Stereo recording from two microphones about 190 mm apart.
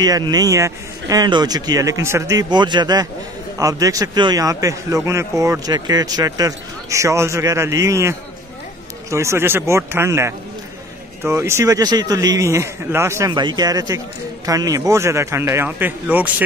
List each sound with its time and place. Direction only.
0.0 s speech: 20° right (ahead or behind)